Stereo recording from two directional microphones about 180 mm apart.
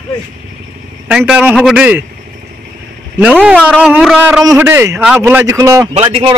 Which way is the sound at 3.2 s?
5° right (ahead or behind).